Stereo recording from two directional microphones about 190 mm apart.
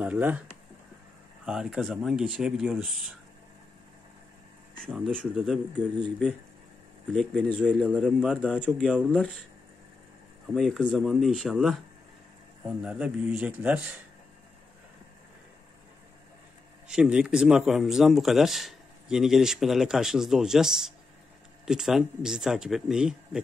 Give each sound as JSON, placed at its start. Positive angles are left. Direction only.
{"t": 0.0, "sound": "a man's voice", "side_deg": -10}
{"t": 4.8, "sound": "speech", "side_deg": -5}
{"t": 7.1, "sound": "speech", "side_deg": 5}
{"t": 8.5, "sound": "speech", "side_deg": 10}
{"t": 8.8, "sound": "speech", "side_deg": -5}
{"t": 10.5, "sound": "speech", "side_deg": 0}
{"t": 12.8, "sound": "a man's voice", "side_deg": -5}
{"t": 16.8, "sound": "speech", "side_deg": -5}